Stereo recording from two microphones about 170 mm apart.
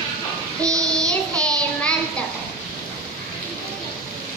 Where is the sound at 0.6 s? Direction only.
20° right (ahead or behind).